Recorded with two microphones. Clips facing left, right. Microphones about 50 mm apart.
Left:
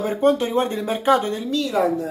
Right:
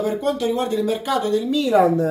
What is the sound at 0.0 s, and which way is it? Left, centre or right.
Speech, left.